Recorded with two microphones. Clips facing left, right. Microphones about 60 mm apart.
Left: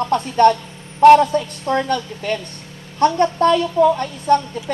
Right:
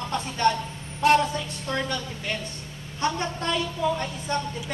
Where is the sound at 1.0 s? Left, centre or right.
Left.